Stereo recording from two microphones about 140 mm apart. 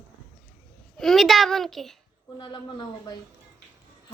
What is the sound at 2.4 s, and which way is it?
Speech, 30° left (ahead or behind).